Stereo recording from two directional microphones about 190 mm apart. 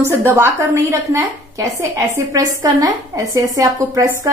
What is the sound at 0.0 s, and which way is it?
A woman's voice, 15° right (ahead or behind).